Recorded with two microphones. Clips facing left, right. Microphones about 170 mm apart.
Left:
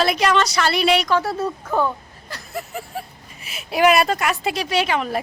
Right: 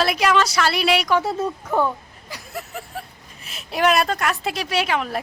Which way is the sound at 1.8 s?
10° right (ahead or behind).